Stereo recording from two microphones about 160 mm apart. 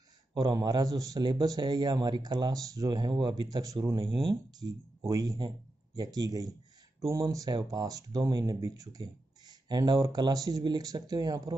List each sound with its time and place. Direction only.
0.3 s speech: 25° right (ahead or behind)